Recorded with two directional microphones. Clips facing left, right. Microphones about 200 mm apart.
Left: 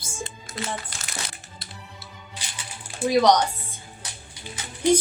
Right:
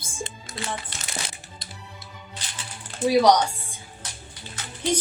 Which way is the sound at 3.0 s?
10° left (ahead or behind).